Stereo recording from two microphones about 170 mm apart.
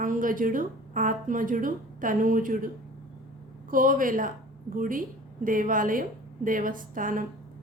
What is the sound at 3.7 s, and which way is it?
A woman's voice, 55° right (ahead or behind).